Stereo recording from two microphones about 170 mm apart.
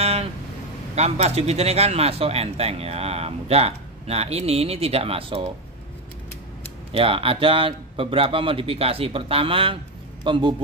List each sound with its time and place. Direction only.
0.0 s a sound: 35° right (ahead or behind)
0.9 s speech: 40° right (ahead or behind)
6.9 s a man's voice: 30° right (ahead or behind)